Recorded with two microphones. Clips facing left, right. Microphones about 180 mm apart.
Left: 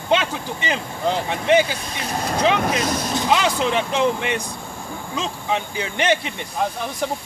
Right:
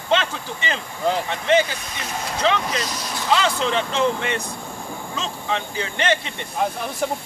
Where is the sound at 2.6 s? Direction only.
55° left (ahead or behind).